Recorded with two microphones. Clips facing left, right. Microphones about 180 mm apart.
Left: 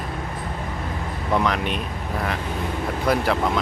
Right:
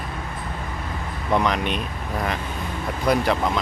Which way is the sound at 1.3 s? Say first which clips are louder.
Right 1 dB; centre (ahead or behind).